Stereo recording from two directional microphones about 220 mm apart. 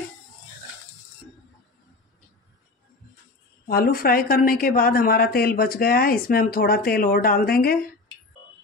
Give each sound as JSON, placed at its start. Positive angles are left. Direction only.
{"t": 3.6, "sound": "a woman's voice", "side_deg": 45}